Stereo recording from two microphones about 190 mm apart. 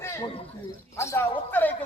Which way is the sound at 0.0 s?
15° left (ahead or behind).